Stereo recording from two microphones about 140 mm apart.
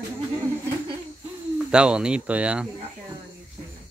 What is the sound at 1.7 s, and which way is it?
Speech, 5° right (ahead or behind).